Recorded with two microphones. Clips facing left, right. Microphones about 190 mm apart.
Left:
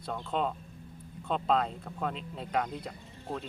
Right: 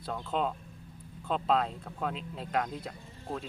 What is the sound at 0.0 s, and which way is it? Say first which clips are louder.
Speech: even; centre (ahead or behind).